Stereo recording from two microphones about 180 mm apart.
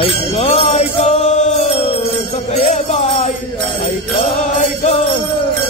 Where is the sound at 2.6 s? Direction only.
40° left (ahead or behind).